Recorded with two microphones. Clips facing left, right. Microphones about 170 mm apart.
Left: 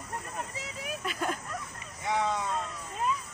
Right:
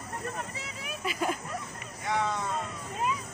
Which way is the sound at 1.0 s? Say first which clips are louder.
Right 3 dB; 5° right (ahead or behind).